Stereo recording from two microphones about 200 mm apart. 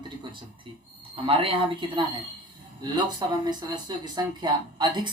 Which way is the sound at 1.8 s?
25° right (ahead or behind).